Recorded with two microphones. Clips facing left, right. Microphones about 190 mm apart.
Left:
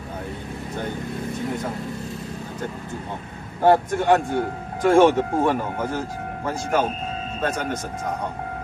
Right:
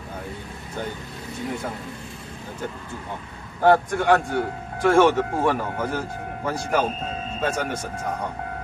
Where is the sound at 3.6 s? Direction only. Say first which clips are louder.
Left 1 dB; 15° left (ahead or behind).